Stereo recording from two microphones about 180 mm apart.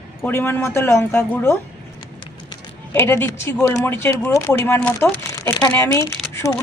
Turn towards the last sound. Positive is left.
turn(degrees=20)  # may be behind; listen again after turning